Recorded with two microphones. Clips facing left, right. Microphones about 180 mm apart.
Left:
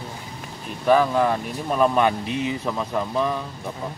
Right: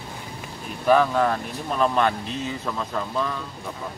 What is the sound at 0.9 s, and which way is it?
Speech, centre (ahead or behind).